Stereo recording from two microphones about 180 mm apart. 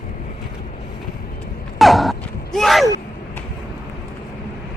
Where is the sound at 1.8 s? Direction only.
Centre (ahead or behind).